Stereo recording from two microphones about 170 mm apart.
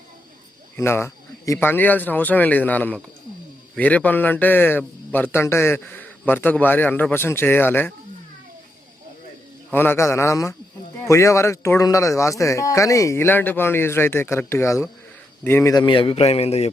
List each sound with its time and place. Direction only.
0.8 s a man's voice: 15° left (ahead or behind)
9.7 s a man's voice: 10° left (ahead or behind); by 16.7 s 40° left (ahead or behind)